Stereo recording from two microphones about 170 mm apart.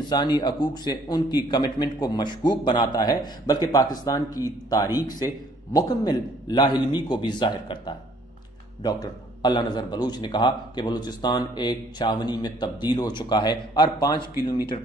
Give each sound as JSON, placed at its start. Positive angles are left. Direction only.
{"t": 0.1, "sound": "a man's voice", "side_deg": 25}